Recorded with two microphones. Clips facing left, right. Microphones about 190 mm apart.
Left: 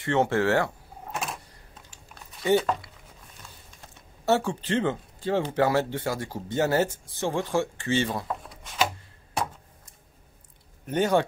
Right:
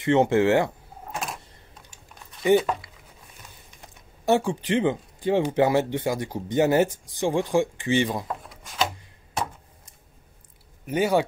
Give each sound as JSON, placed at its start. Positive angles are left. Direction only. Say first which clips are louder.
{"t": 0.0, "sound": "speech", "louder": "right 4 dB", "side_deg": -15}
{"t": 2.4, "sound": "speech", "louder": "right 3 dB", "side_deg": -15}
{"t": 4.3, "sound": "speech", "louder": "right 2 dB", "side_deg": -15}
{"t": 8.3, "sound": "a sound", "louder": "even", "side_deg": 0}
{"t": 10.9, "sound": "speech", "louder": "right 1 dB", "side_deg": -10}